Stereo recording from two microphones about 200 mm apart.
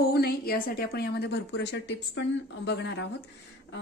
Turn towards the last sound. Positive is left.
turn(degrees=60)  # may be behind; listen again after turning